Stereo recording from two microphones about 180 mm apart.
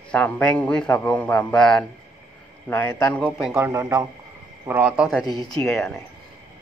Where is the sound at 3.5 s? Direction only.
15° right (ahead or behind); by 6.0 s 5° left (ahead or behind).